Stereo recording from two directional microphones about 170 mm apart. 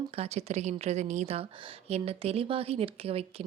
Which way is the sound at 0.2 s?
40° right (ahead or behind).